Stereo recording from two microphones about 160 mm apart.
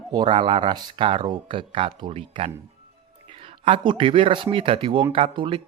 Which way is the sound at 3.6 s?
35° right (ahead or behind).